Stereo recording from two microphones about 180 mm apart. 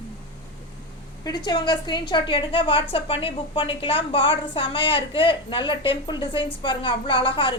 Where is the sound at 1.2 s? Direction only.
20° left (ahead or behind).